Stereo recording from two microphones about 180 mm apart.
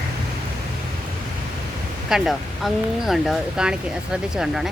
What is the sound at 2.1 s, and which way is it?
Speech, centre (ahead or behind).